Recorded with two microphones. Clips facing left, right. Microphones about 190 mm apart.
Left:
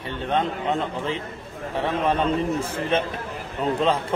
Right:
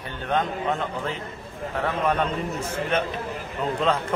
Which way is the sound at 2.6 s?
30° left (ahead or behind).